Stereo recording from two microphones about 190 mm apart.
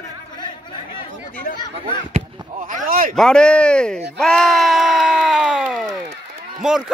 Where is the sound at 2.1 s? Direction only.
45° right (ahead or behind).